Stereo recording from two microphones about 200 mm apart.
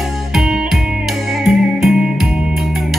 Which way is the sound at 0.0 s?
Centre (ahead or behind).